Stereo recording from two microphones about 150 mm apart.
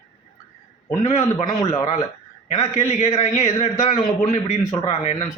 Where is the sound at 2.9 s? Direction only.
50° left (ahead or behind).